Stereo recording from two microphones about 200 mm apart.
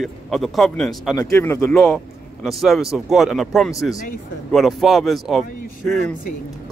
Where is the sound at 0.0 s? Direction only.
Centre (ahead or behind).